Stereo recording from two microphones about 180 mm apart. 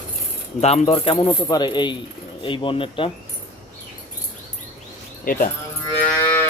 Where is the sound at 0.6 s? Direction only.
35° left (ahead or behind).